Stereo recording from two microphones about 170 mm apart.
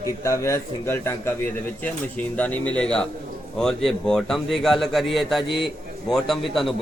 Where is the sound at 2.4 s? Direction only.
10° left (ahead or behind).